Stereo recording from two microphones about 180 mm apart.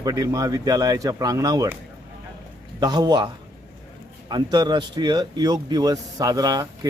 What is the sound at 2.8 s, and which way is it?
Speech, 25° right (ahead or behind).